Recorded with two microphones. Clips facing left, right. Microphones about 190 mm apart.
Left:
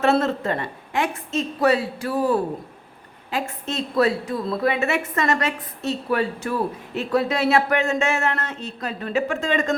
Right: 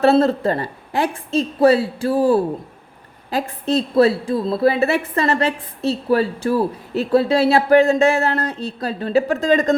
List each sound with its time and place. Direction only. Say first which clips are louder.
0.0 s a woman's voice: right 6 dB; 35° right (ahead or behind)